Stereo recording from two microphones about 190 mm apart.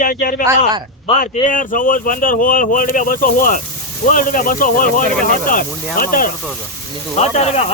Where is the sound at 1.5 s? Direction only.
45° left (ahead or behind).